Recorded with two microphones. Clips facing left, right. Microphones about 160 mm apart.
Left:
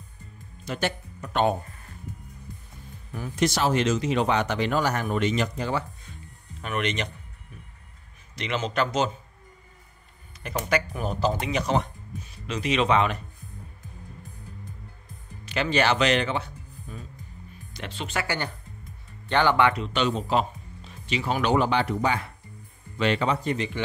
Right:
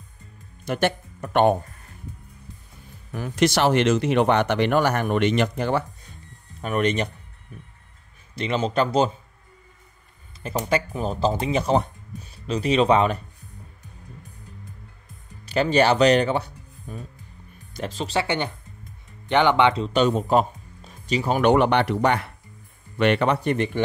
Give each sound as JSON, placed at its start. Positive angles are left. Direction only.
{"t": 0.7, "sound": "speech", "side_deg": -55}
{"t": 3.1, "sound": "speech", "side_deg": -80}
{"t": 6.6, "sound": "speech", "side_deg": -35}
{"t": 8.4, "sound": "speech", "side_deg": -30}
{"t": 10.4, "sound": "speech", "side_deg": -30}
{"t": 15.5, "sound": "speech", "side_deg": -35}
{"t": 19.8, "sound": "speech", "side_deg": -40}
{"t": 21.5, "sound": "speech", "side_deg": -65}